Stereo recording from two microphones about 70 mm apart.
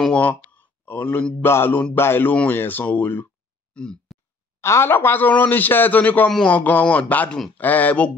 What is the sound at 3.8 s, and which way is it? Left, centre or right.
Speech, centre.